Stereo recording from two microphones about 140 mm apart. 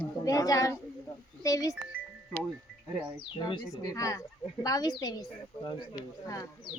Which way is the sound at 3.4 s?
35° left (ahead or behind).